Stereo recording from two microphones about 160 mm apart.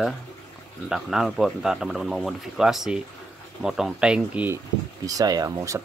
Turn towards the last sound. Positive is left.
turn(degrees=-20)  # may be behind; listen again after turning